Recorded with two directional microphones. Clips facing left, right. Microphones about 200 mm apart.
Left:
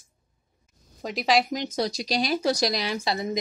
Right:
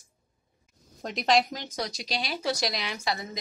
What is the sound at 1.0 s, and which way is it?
Speech, centre (ahead or behind).